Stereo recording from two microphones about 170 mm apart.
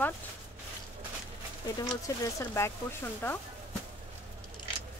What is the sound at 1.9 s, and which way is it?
Speech, 20° left (ahead or behind).